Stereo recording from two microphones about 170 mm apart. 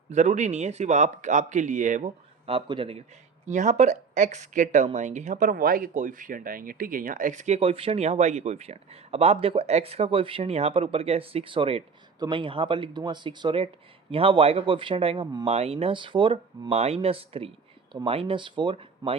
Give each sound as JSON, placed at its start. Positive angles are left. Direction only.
{"t": 0.1, "sound": "speech", "side_deg": -45}
{"t": 3.4, "sound": "speech", "side_deg": -45}